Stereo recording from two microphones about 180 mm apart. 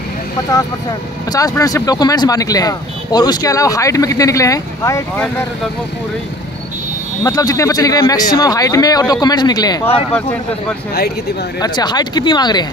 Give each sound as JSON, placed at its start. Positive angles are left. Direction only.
{"t": 0.5, "sound": "speech", "side_deg": 20}
{"t": 7.2, "sound": "speech", "side_deg": 20}
{"t": 11.6, "sound": "speech", "side_deg": 25}